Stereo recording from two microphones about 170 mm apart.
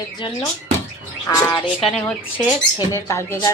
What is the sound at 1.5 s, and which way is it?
Speech, 25° left (ahead or behind).